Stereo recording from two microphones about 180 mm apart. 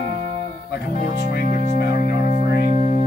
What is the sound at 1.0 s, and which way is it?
Music, 50° left (ahead or behind).